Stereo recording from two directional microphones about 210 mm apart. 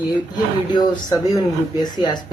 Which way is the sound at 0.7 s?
20° left (ahead or behind).